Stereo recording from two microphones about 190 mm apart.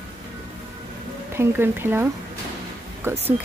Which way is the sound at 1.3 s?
10° right (ahead or behind).